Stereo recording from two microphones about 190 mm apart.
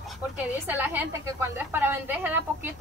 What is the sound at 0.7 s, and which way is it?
A woman's voice, 10° right (ahead or behind).